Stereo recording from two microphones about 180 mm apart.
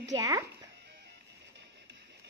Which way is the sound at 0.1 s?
20° right (ahead or behind).